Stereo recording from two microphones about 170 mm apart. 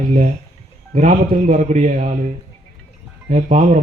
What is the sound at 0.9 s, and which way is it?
A man's voice, 55° right (ahead or behind).